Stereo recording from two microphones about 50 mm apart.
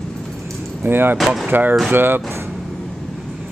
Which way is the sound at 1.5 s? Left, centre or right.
Right.